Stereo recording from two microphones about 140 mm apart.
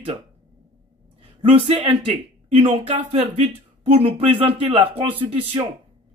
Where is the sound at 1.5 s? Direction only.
40° right (ahead or behind).